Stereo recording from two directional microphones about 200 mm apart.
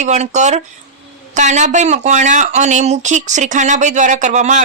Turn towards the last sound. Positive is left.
turn(degrees=-35)  # may be behind; listen again after turning